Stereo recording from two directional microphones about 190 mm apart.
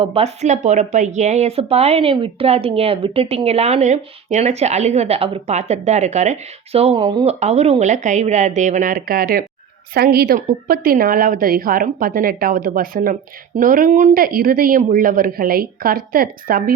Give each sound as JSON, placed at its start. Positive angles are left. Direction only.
{"t": 0.0, "sound": "a woman's voice", "side_deg": -30}